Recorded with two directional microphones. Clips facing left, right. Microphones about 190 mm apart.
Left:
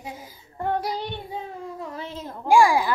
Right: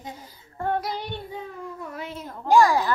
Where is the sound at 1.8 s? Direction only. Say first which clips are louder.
Left 1 dB; 25° left (ahead or behind).